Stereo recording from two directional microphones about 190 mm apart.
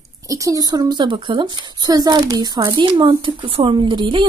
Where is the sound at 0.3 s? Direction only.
15° right (ahead or behind).